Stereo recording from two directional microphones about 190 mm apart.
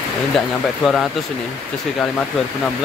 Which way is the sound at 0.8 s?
Centre (ahead or behind).